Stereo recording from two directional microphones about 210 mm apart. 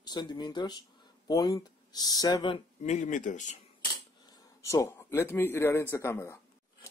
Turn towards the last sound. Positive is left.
turn(degrees=10)  # may be behind; listen again after turning